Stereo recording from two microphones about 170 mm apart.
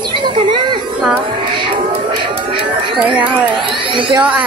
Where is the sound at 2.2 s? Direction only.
30° right (ahead or behind).